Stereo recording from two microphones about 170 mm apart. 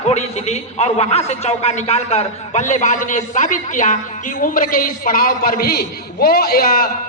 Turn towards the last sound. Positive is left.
turn(degrees=60)  # may be behind; listen again after turning